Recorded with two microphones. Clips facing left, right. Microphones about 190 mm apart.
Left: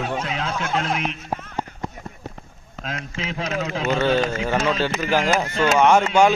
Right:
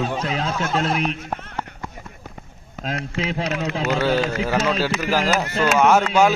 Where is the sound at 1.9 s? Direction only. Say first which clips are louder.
Left 3 dB; 5° right (ahead or behind).